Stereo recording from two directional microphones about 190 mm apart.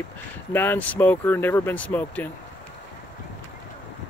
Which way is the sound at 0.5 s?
10° left (ahead or behind).